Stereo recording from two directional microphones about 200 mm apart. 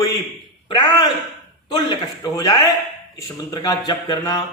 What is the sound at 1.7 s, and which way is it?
A man's voice, 20° left (ahead or behind).